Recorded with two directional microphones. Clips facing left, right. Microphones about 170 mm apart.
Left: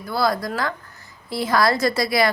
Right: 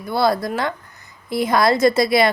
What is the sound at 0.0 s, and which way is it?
A woman's voice, 25° right (ahead or behind).